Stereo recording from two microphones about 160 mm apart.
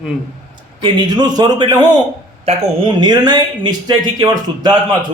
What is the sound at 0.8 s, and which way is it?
A man's voice, 25° right (ahead or behind).